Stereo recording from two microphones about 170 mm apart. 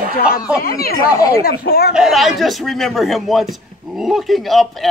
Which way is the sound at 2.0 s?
Centre (ahead or behind).